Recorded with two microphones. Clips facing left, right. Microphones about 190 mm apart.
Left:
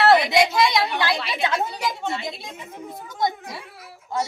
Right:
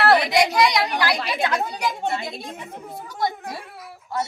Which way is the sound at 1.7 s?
50° right (ahead or behind).